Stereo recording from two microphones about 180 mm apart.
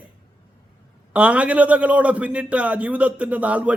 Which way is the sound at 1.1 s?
5° right (ahead or behind).